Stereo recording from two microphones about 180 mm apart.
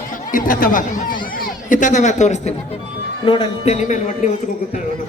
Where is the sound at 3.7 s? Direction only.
40° left (ahead or behind).